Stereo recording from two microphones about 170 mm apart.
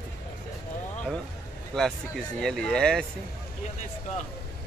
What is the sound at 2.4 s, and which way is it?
Speech, 5° left (ahead or behind).